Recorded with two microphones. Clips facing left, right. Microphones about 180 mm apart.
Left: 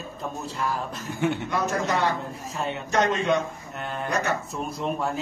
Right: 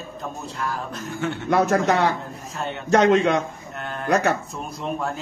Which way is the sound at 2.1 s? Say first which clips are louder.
Even; centre (ahead or behind).